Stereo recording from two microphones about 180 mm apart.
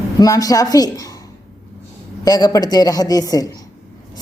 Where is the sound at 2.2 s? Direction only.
20° left (ahead or behind).